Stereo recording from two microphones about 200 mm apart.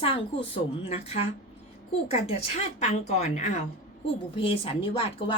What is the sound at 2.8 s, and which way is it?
A woman's voice, 35° left (ahead or behind).